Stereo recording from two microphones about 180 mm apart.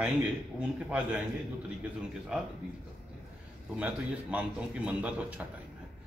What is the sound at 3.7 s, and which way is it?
A man's voice, 10° right (ahead or behind).